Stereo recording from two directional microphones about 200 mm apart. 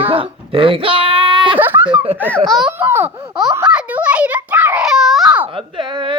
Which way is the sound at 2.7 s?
10° right (ahead or behind).